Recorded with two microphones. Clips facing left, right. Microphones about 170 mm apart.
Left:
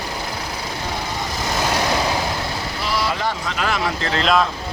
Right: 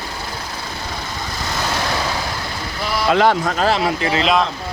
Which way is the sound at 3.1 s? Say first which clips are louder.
Right 10 dB; 75° right (ahead or behind).